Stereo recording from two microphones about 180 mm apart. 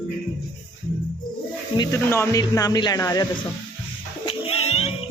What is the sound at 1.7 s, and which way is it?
Speech, 20° left (ahead or behind).